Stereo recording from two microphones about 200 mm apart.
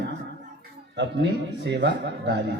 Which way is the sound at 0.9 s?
60° right (ahead or behind).